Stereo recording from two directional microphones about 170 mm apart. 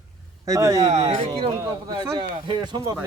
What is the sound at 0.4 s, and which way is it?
Speech, 20° right (ahead or behind).